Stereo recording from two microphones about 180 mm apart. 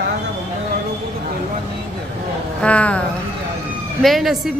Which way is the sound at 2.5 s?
5° left (ahead or behind).